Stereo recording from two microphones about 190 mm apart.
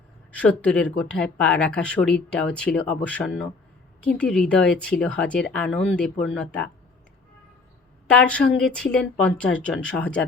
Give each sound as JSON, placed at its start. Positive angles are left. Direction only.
{"t": 0.3, "sound": "speech", "side_deg": 5}
{"t": 8.1, "sound": "speech", "side_deg": 5}